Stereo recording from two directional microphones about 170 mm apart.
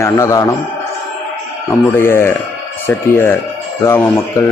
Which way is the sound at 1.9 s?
15° left (ahead or behind).